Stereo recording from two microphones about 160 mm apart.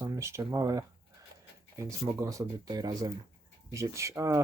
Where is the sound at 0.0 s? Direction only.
15° right (ahead or behind).